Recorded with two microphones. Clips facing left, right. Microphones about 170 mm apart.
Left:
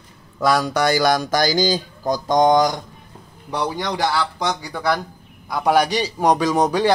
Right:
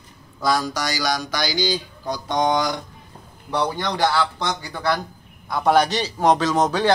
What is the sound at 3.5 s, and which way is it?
A man's voice, 15° left (ahead or behind).